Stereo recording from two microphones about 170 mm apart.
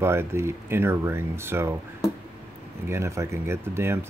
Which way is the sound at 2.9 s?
15° right (ahead or behind).